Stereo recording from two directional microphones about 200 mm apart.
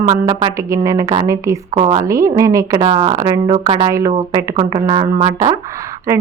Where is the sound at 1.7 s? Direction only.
30° right (ahead or behind).